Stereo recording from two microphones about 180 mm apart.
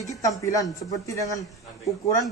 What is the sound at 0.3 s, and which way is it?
A man's voice, 20° left (ahead or behind).